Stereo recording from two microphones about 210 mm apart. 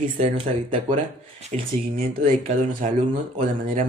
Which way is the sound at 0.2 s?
30° right (ahead or behind).